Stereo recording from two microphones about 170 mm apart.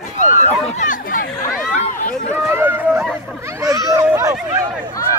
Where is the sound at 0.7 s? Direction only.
50° left (ahead or behind).